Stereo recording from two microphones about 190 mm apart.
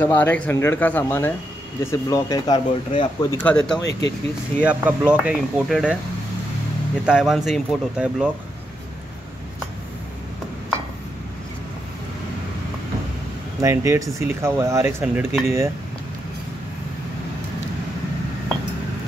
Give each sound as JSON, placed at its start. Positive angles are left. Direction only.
{"t": 0.0, "sound": "speech", "side_deg": 10}
{"t": 3.4, "sound": "speech", "side_deg": 5}
{"t": 4.6, "sound": "speech", "side_deg": -5}
{"t": 7.1, "sound": "speech", "side_deg": 0}
{"t": 13.6, "sound": "speech", "side_deg": -15}